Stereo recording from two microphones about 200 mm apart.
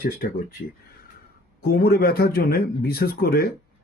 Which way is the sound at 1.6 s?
50° left (ahead or behind).